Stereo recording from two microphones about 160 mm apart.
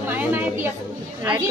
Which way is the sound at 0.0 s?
10° right (ahead or behind).